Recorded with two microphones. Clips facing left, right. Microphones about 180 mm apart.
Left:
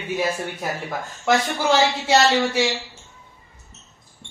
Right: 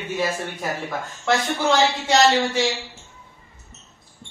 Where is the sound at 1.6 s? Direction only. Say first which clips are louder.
Even; 10° left (ahead or behind).